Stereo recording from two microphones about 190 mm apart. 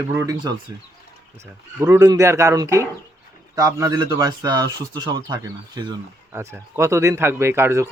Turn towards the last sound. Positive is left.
turn(degrees=-15)  # may be behind; listen again after turning